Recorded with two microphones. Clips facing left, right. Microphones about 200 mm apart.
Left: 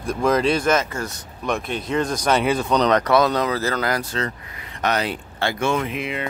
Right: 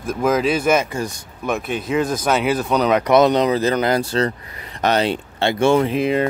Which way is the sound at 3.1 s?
20° right (ahead or behind).